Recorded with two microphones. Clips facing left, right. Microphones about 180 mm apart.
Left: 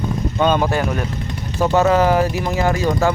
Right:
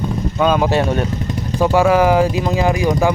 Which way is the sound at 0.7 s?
25° right (ahead or behind).